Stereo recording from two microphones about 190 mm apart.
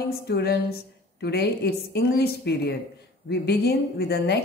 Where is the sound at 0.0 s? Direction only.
60° left (ahead or behind).